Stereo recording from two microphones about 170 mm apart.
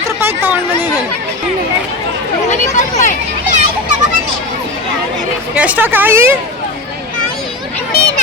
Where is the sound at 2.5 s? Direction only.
45° left (ahead or behind).